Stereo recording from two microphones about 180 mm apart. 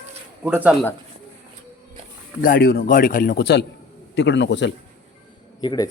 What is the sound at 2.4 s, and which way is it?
Speech, 50° left (ahead or behind).